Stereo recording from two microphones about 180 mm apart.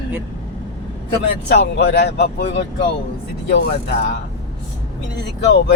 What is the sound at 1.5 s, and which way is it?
Speech, 70° left (ahead or behind).